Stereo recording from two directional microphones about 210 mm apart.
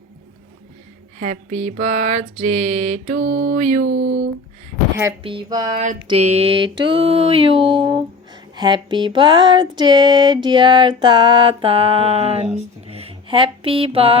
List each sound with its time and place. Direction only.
1.2 s mantra: 35° right (ahead or behind)
3.8 s speech: 75° right (ahead or behind)
5.2 s a sound: 25° right (ahead or behind)